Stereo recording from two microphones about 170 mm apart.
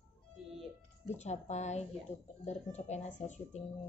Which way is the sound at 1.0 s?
40° left (ahead or behind).